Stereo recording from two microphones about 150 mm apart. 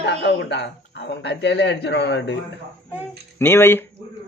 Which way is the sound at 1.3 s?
90° left.